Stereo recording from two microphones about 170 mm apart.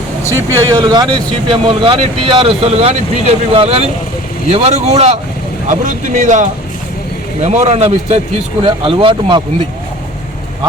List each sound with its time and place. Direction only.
0.3 s speech: 20° right (ahead or behind)